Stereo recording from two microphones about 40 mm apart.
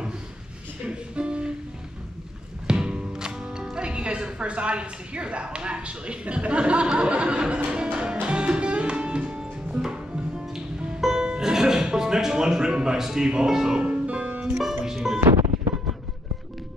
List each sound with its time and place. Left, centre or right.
0.8 s speech: right
2.6 s music: centre
3.7 s a woman's voice: right
7.0 s music: right; by 11.2 s centre
11.2 s speech: centre
13.9 s music: right
15.0 s music: centre